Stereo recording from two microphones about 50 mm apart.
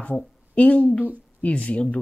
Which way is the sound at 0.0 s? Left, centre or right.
Left.